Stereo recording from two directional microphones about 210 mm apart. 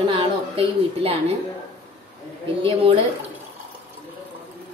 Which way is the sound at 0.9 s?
25° right (ahead or behind).